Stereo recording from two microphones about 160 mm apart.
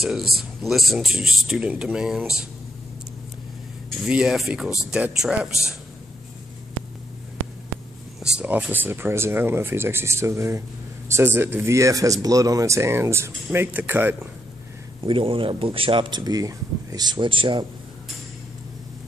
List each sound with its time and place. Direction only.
0.4 s speech: centre (ahead or behind)
4.0 s speech: 5° right (ahead or behind)
8.2 s speech: 10° right (ahead or behind)
15.0 s speech: 35° right (ahead or behind)